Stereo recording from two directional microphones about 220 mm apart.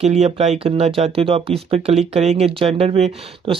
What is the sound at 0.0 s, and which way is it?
Speech, 30° right (ahead or behind).